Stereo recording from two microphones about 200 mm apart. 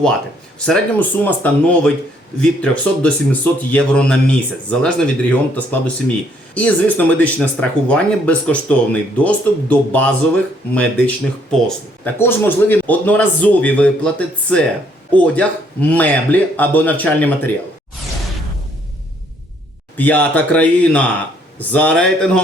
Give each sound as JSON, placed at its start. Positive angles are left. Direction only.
{"t": 0.6, "sound": "speech", "side_deg": 5}
{"t": 20.0, "sound": "speech", "side_deg": 10}